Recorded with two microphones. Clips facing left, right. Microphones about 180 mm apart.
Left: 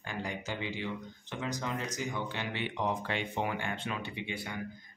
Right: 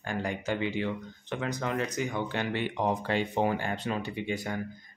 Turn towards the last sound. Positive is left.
turn(degrees=-45)  # may be behind; listen again after turning